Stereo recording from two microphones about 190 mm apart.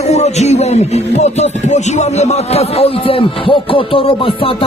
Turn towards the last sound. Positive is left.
turn(degrees=30)  # may be behind; listen again after turning